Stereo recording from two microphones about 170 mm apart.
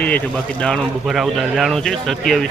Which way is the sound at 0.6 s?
Centre (ahead or behind).